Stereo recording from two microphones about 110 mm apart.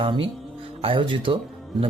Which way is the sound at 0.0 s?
50° right (ahead or behind).